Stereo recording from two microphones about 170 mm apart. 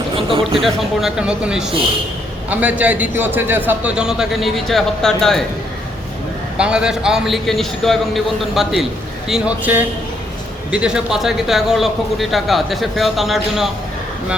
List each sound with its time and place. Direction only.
0.2 s speech: 30° right (ahead or behind)
0.6 s a man's voice: centre (ahead or behind)
6.6 s a man's voice: 5° right (ahead or behind)